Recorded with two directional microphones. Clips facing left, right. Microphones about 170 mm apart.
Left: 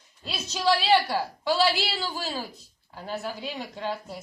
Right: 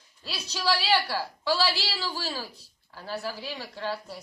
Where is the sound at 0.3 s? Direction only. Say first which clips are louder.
Left 4 dB; 25° left (ahead or behind).